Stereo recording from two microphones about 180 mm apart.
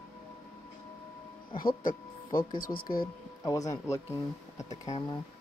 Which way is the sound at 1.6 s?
50° left (ahead or behind).